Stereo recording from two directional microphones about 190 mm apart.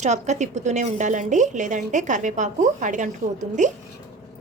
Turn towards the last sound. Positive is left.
turn(degrees=-40)  # may be behind; listen again after turning